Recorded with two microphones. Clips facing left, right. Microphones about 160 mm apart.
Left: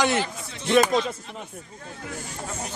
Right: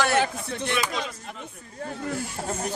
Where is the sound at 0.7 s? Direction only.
45° left (ahead or behind).